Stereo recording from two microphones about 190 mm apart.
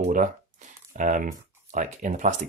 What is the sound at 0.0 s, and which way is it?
Speech, 40° right (ahead or behind).